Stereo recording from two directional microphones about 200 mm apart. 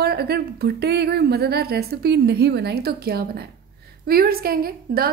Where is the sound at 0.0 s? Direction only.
50° right (ahead or behind).